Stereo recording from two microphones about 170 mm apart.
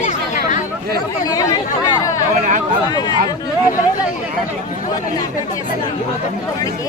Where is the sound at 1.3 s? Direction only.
20° left (ahead or behind).